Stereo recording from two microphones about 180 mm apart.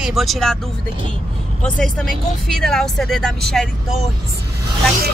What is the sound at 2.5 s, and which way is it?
Speech, 5° left (ahead or behind).